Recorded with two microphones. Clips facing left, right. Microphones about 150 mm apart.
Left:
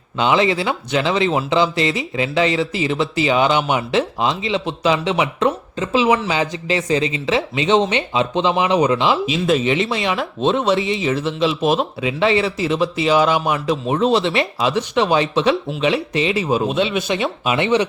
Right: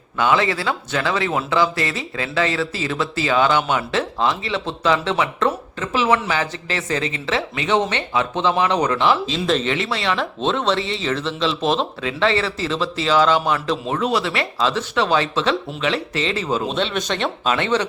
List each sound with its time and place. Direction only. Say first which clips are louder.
0.2 s speech: left 2 dB; 20° left (ahead or behind)
14.0 s speech: left 5 dB; 25° left (ahead or behind)